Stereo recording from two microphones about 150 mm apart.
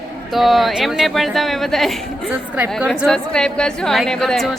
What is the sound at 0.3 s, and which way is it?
A woman's voice, centre (ahead or behind).